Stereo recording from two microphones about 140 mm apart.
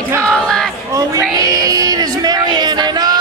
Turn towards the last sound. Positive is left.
turn(degrees=-30)  # may be behind; listen again after turning